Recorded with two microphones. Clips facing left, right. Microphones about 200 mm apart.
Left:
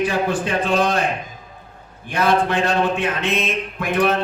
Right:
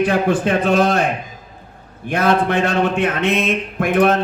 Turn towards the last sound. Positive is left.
turn(degrees=-55)  # may be behind; listen again after turning